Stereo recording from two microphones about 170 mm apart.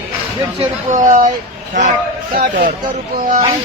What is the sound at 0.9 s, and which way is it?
Speech, 50° right (ahead or behind).